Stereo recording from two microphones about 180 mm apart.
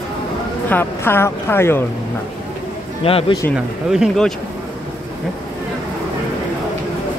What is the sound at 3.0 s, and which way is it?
Speech, 30° left (ahead or behind).